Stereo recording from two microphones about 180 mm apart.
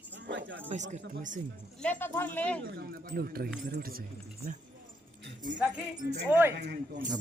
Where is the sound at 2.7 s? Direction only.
60° right (ahead or behind).